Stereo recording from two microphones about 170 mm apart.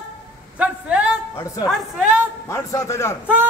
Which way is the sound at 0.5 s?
5° right (ahead or behind).